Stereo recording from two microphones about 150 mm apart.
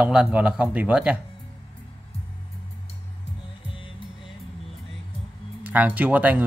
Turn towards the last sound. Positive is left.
turn(degrees=-10)  # may be behind; listen again after turning